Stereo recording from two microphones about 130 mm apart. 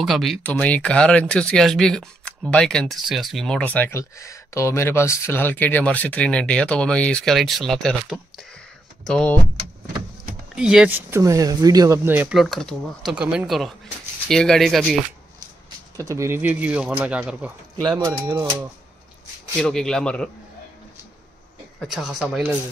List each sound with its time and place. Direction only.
0.0 s speech: centre (ahead or behind)
0.4 s speech: 10° left (ahead or behind)
10.5 s speech: 5° right (ahead or behind); by 12.0 s 30° right (ahead or behind)
12.0 s speech: 15° right (ahead or behind)
12.4 s speech: centre (ahead or behind)
13.1 s speech: 10° right (ahead or behind)
16.1 s speech: 20° right (ahead or behind)
17.8 s speech: 35° right (ahead or behind)
19.6 s speech: 5° left (ahead or behind)
21.7 s speech: centre (ahead or behind)